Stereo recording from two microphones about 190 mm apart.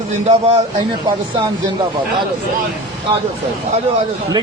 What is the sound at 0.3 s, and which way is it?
Speech, 30° right (ahead or behind).